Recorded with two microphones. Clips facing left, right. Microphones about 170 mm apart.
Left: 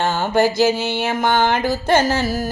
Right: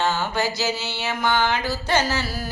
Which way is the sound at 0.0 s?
50° left (ahead or behind).